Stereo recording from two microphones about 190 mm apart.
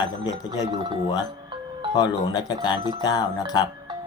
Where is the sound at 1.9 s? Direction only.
20° left (ahead or behind).